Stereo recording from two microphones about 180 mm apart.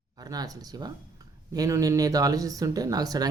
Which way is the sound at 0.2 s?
20° right (ahead or behind).